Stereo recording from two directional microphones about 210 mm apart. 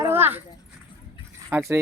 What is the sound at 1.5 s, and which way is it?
Speech, 10° right (ahead or behind).